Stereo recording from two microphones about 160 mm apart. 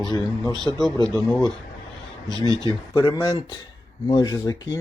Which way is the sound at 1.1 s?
25° left (ahead or behind).